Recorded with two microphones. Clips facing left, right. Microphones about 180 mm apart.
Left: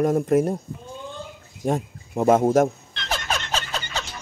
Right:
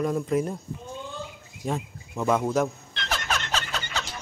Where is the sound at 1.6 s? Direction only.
45° left (ahead or behind).